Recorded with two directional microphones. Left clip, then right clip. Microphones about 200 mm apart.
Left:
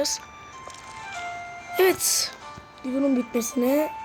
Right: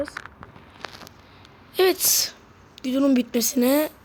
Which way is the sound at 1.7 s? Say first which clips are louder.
Right 1 dB; centre (ahead or behind).